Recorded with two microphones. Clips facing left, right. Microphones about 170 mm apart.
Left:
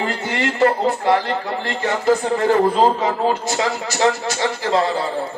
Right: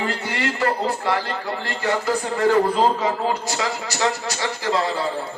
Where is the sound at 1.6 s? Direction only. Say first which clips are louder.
Left 4 dB; 25° left (ahead or behind).